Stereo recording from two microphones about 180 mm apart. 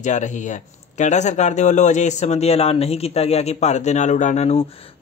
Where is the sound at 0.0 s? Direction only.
40° left (ahead or behind).